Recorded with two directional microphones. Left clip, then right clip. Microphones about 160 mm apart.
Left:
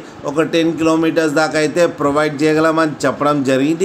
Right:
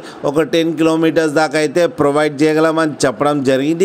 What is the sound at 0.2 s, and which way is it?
A man's voice, 45° right (ahead or behind).